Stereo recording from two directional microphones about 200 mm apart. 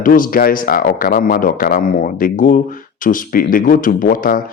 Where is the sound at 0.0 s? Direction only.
45° left (ahead or behind).